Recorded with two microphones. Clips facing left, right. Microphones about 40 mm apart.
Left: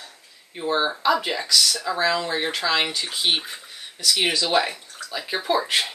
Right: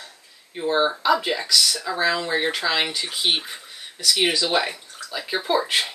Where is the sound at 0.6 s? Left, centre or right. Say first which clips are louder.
Right 2 dB; centre.